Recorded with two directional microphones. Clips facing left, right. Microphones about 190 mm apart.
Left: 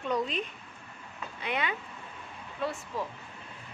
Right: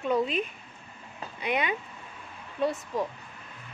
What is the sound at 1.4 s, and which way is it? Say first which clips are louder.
Speech: right 4 dB; 15° right (ahead or behind).